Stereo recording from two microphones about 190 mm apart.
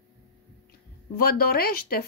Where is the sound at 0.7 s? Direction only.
50° left (ahead or behind).